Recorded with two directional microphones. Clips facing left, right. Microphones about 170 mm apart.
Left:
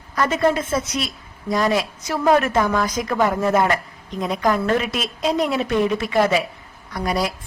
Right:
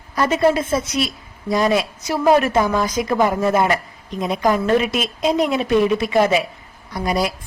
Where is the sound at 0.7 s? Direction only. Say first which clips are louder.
Right 3 dB; 10° right (ahead or behind).